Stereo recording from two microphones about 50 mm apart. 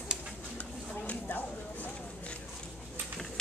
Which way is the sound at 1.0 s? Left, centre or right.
Left.